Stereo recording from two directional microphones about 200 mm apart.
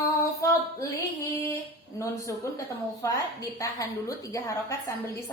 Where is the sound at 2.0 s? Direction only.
15° left (ahead or behind).